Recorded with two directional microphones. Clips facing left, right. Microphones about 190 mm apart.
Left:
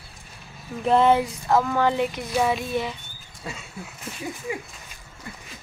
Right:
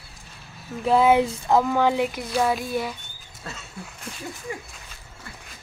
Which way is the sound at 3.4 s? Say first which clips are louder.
Left 2 dB; 5° left (ahead or behind).